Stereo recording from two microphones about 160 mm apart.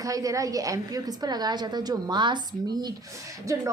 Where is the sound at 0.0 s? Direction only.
20° right (ahead or behind).